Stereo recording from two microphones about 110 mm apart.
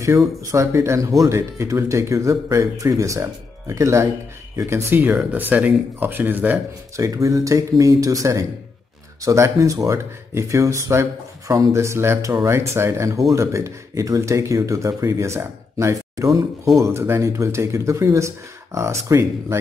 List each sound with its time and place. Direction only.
0.0 s speech: 25° right (ahead or behind)
7.0 s speech: 30° right (ahead or behind)